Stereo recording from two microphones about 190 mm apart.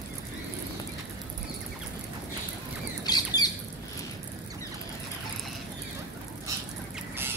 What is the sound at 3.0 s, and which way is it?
Squawk, 20° left (ahead or behind).